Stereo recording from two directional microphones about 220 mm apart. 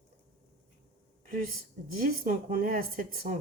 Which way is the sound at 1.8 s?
40° right (ahead or behind).